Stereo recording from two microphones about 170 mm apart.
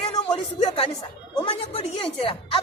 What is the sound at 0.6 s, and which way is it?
Speech, 25° left (ahead or behind).